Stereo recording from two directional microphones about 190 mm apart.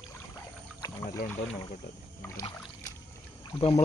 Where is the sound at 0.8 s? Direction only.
20° left (ahead or behind).